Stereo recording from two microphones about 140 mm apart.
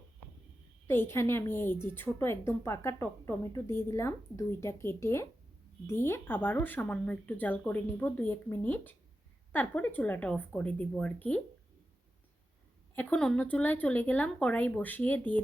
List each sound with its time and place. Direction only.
0.9 s a woman's voice: 15° left (ahead or behind)
13.0 s a woman's voice: 5° left (ahead or behind)